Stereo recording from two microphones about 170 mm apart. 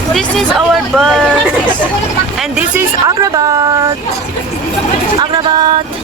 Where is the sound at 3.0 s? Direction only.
20° right (ahead or behind).